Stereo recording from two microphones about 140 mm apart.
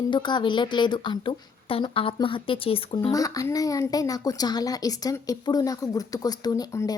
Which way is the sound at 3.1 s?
25° left (ahead or behind).